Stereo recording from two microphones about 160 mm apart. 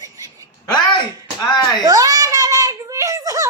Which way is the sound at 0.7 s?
30° left (ahead or behind).